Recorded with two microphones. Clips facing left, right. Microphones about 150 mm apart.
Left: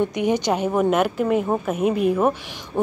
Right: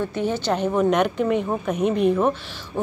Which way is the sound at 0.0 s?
15° left (ahead or behind).